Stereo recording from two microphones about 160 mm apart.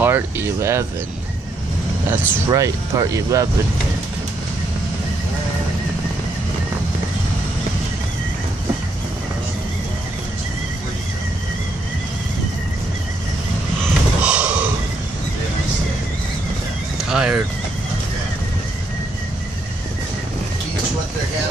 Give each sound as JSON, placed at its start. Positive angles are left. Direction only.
{"t": 0.0, "sound": "speech", "side_deg": -15}
{"t": 2.0, "sound": "speech", "side_deg": -20}
{"t": 14.2, "sound": "a sound", "side_deg": -5}
{"t": 17.1, "sound": "vehicle", "side_deg": -5}